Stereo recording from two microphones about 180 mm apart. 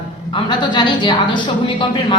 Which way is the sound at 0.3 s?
25° left (ahead or behind).